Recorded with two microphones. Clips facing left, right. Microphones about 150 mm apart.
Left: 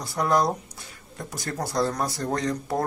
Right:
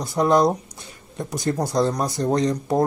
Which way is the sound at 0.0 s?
20° right (ahead or behind).